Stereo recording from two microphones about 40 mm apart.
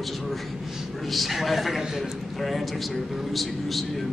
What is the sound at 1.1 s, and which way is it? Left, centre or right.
A man's voice, centre.